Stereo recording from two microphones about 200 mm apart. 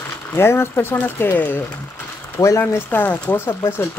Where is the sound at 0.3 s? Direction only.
10° left (ahead or behind).